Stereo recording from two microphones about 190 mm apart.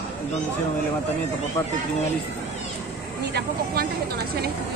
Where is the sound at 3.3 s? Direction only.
55° right (ahead or behind).